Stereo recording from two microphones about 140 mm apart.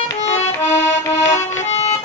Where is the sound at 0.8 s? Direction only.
20° left (ahead or behind).